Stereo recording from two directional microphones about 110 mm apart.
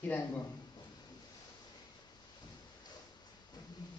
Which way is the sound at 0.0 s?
20° left (ahead or behind).